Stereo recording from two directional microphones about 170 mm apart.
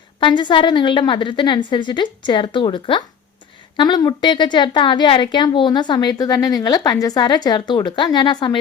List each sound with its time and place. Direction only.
0.2 s a woman's voice: 30° left (ahead or behind)